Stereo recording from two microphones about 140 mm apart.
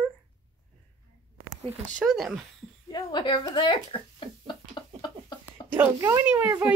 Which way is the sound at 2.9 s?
35° left (ahead or behind).